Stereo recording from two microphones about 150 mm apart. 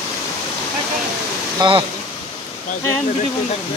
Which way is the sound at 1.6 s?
30° right (ahead or behind).